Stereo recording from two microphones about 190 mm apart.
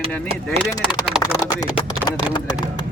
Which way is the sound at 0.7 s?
20° left (ahead or behind).